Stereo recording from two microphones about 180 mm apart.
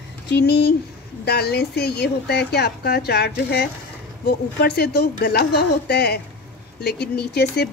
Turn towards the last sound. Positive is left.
turn(degrees=65)  # may be behind; listen again after turning